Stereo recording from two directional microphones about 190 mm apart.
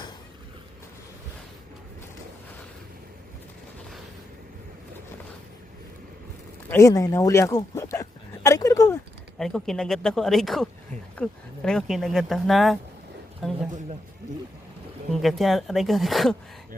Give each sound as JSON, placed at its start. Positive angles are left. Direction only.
{"t": 6.7, "sound": "speech", "side_deg": 15}
{"t": 8.4, "sound": "a sound", "side_deg": 15}
{"t": 9.4, "sound": "speech", "side_deg": 5}
{"t": 15.1, "sound": "speech", "side_deg": 0}